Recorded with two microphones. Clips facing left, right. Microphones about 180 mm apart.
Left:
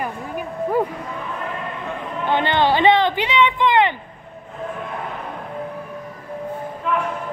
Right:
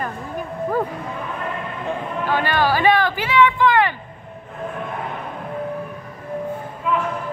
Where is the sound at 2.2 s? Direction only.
20° left (ahead or behind).